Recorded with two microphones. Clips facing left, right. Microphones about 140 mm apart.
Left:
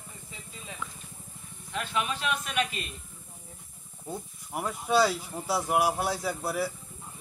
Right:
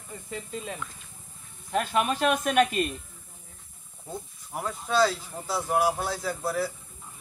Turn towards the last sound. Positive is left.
turn(degrees=10)  # may be behind; listen again after turning